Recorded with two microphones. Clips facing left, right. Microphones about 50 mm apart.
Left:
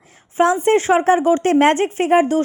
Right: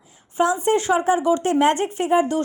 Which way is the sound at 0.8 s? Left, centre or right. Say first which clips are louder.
Left 4 dB; left.